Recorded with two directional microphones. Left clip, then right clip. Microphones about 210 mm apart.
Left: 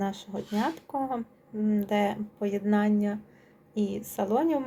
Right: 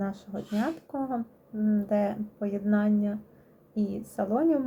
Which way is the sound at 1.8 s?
Centre (ahead or behind).